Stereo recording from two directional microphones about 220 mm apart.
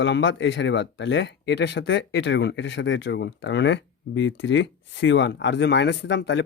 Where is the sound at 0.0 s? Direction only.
60° left (ahead or behind).